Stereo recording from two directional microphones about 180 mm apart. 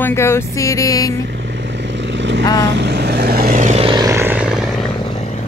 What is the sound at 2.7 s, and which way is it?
Vehicle, 70° right (ahead or behind).